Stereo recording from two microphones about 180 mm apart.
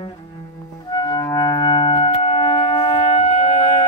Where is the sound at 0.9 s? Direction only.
20° left (ahead or behind).